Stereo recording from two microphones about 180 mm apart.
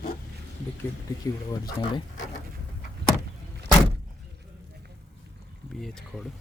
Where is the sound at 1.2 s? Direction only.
20° left (ahead or behind).